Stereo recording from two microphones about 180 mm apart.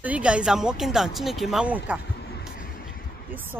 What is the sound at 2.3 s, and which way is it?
Vehicle, 55° left (ahead or behind).